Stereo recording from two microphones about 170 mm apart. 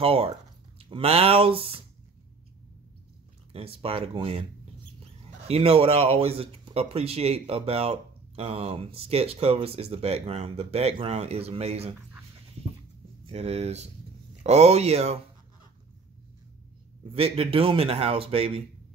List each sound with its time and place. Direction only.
0.0 s speech: 35° right (ahead or behind)
3.5 s speech: 35° right (ahead or behind)
13.3 s speech: 40° right (ahead or behind)
17.1 s speech: 35° right (ahead or behind)